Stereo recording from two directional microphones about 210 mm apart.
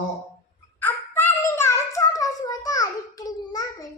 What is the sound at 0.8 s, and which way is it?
Child singing, 10° left (ahead or behind).